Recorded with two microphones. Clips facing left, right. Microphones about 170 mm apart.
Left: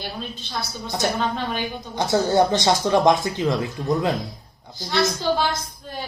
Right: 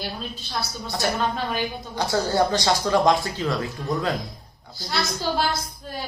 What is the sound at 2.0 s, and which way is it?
Speech, 20° left (ahead or behind).